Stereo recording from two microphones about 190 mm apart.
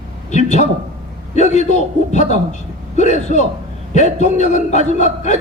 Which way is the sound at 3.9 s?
40° left (ahead or behind).